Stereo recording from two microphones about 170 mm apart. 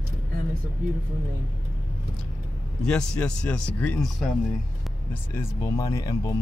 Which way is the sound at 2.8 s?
5° left (ahead or behind).